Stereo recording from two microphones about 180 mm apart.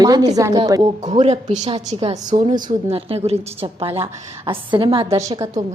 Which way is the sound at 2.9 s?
35° right (ahead or behind).